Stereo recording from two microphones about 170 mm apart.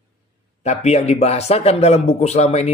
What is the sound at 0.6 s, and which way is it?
Speech, 40° left (ahead or behind).